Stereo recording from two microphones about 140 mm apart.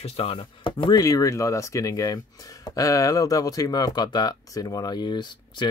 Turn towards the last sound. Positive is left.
turn(degrees=35)  # may be behind; listen again after turning